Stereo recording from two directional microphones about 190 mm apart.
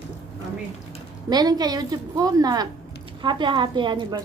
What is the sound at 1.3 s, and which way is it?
A woman's voice, 20° right (ahead or behind).